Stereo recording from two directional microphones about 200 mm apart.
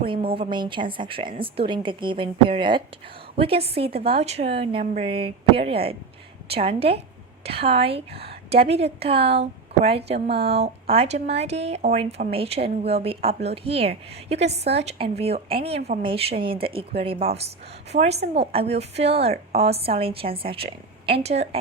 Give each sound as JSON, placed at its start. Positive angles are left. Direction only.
{"t": 0.0, "sound": "a woman's voice", "side_deg": -25}